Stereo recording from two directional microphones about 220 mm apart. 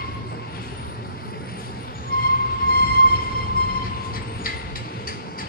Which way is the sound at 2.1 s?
45° left (ahead or behind).